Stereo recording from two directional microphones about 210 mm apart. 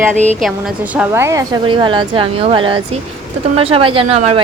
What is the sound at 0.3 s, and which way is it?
Speech, centre (ahead or behind).